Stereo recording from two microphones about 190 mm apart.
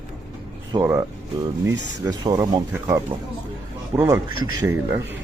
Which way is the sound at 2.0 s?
20° right (ahead or behind).